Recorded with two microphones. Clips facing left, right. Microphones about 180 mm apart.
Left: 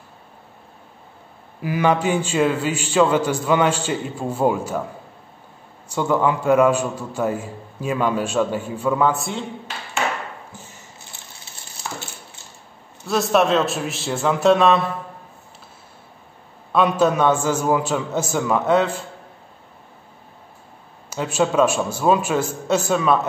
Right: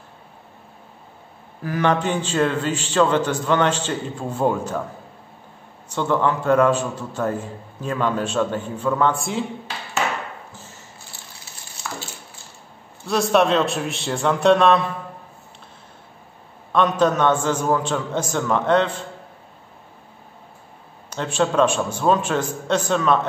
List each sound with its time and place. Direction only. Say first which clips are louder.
1.6 s a man's voice: left 1 dB; 10° left (ahead or behind)
5.9 s a man's voice: left 1 dB; 10° left (ahead or behind)
13.0 s a man's voice: even; centre (ahead or behind)
16.7 s a man's voice: left 1 dB; 10° left (ahead or behind)
21.1 s a man's voice: left 1 dB; 5° left (ahead or behind)